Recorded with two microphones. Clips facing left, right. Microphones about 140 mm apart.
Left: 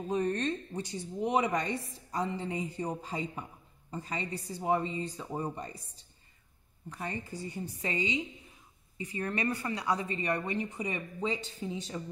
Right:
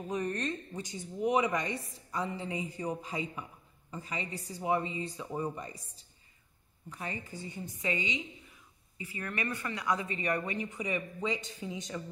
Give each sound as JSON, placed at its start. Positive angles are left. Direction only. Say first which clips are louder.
{"t": 0.1, "sound": "speech", "louder": "left 4 dB", "side_deg": 30}
{"t": 4.8, "sound": "speech", "louder": "left 2 dB", "side_deg": -10}
{"t": 5.2, "sound": "speech", "louder": "even", "side_deg": 25}
{"t": 7.5, "sound": "speech", "louder": "even", "side_deg": 35}